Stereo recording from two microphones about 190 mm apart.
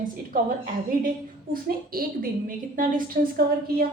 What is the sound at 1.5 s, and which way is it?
A woman's voice, 50° right (ahead or behind).